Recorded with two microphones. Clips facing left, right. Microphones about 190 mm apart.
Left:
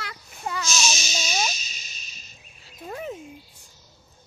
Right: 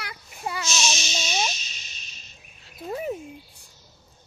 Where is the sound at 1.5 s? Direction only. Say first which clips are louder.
Even; 40° left (ahead or behind).